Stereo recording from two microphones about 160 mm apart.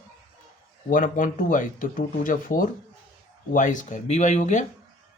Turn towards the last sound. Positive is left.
turn(degrees=50)  # may be behind; listen again after turning